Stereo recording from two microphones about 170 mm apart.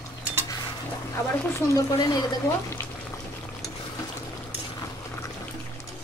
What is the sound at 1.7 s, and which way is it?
Speech, 20° left (ahead or behind).